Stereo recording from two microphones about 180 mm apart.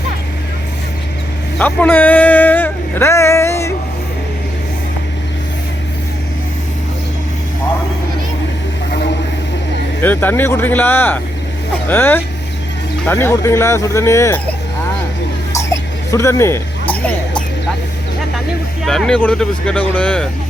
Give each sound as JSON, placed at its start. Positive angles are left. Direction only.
{"t": 1.5, "sound": "speech", "side_deg": 10}
{"t": 10.0, "sound": "speech", "side_deg": 10}
{"t": 15.5, "sound": "a sound", "side_deg": 15}
{"t": 18.9, "sound": "speech", "side_deg": 5}